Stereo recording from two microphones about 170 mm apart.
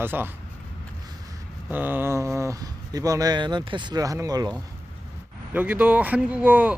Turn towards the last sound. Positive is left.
turn(degrees=-10)  # may be behind; listen again after turning